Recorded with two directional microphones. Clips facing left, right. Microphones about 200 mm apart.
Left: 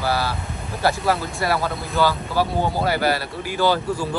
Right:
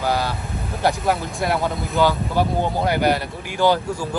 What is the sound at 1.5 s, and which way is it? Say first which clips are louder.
Speech: right 1 dB; 15° right (ahead or behind).